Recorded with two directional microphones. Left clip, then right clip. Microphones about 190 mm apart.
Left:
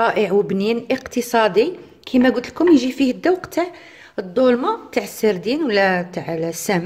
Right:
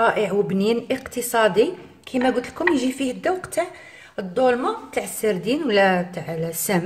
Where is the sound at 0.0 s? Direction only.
40° left (ahead or behind).